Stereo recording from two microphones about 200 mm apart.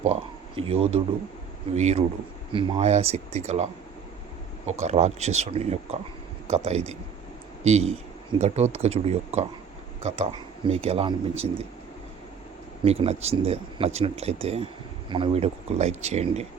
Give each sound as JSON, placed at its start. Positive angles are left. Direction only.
{"t": 0.0, "sound": "a sound", "side_deg": -30}
{"t": 1.7, "sound": "speech", "side_deg": -35}
{"t": 12.8, "sound": "speech", "side_deg": -30}